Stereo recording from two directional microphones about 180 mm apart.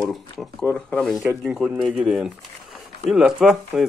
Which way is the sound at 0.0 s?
Centre (ahead or behind).